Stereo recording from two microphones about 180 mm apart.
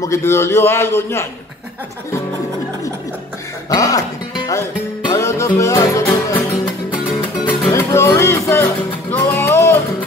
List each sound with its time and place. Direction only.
0.0 s a man's voice: 15° left (ahead or behind)
3.7 s music: 20° left (ahead or behind)
7.7 s music: 15° left (ahead or behind)